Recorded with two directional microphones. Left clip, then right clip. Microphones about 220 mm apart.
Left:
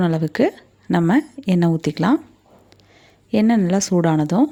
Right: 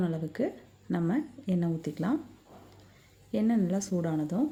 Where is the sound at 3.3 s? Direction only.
45° left (ahead or behind).